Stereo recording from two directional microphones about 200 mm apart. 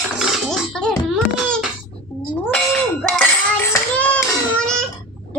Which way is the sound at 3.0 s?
Centre (ahead or behind).